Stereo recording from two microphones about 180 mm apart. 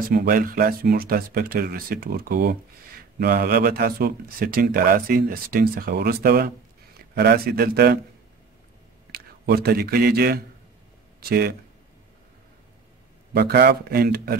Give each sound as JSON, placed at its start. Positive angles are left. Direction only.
{"t": 0.1, "sound": "speech", "side_deg": -55}
{"t": 9.1, "sound": "a man's voice", "side_deg": -60}
{"t": 13.3, "sound": "speech", "side_deg": -60}